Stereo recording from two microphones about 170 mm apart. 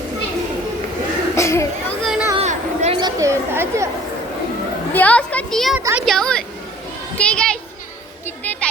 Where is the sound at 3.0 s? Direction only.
20° right (ahead or behind).